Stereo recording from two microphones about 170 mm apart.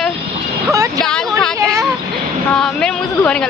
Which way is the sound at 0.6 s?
20° right (ahead or behind).